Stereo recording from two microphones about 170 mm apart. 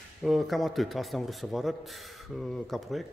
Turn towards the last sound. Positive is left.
turn(degrees=0)  # may be behind; listen again after turning